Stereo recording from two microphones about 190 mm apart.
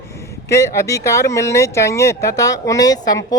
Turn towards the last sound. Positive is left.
turn(degrees=20)  # may be behind; listen again after turning